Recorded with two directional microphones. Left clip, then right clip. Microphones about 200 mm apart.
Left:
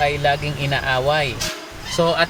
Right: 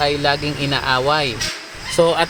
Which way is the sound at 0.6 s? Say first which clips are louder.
Right 2 dB; 20° right (ahead or behind).